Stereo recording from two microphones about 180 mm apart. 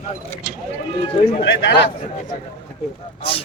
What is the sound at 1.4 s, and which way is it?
Speech, 70° left (ahead or behind).